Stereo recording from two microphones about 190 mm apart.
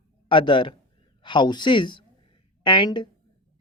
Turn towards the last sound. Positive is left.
turn(degrees=25)  # may be behind; listen again after turning